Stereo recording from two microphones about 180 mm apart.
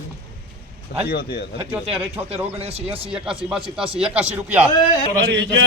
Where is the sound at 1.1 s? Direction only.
60° left (ahead or behind).